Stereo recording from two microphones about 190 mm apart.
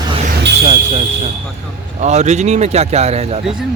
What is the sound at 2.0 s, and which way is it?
Speech, 35° right (ahead or behind).